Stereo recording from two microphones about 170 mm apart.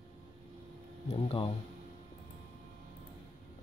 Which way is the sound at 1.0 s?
35° left (ahead or behind).